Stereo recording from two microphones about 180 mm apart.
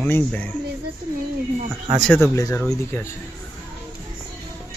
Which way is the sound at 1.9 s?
Centre (ahead or behind).